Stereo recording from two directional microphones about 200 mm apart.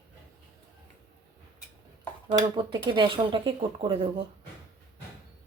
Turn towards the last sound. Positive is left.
turn(degrees=-30)  # may be behind; listen again after turning